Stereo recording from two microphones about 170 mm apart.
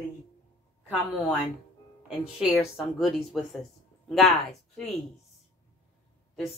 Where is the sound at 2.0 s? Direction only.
5° right (ahead or behind).